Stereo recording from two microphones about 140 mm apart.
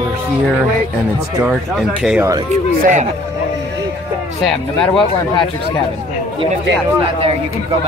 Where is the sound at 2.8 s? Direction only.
65° right (ahead or behind).